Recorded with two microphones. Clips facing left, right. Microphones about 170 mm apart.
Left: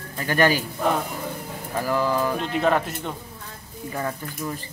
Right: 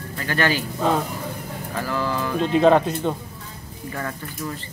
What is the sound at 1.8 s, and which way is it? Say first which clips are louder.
Speech: left 3 dB; 15° left (ahead or behind).